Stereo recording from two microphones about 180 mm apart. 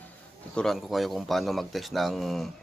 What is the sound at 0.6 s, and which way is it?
A man's voice, centre (ahead or behind).